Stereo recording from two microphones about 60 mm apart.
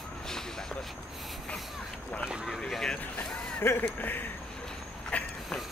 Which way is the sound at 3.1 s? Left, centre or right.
Left.